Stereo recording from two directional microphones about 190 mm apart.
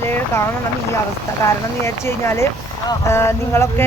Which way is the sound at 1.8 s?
15° left (ahead or behind).